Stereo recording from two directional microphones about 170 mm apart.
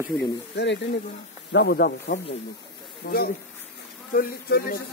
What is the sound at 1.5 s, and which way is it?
Speech, 80° left.